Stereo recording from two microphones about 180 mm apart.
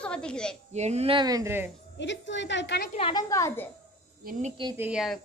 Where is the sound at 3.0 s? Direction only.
30° left (ahead or behind).